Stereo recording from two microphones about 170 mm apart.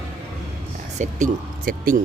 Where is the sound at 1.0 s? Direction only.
50° right (ahead or behind).